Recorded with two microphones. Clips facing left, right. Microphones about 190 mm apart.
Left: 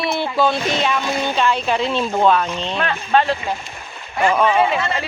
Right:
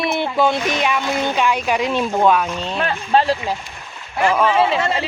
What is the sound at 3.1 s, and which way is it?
Speech, 30° right (ahead or behind).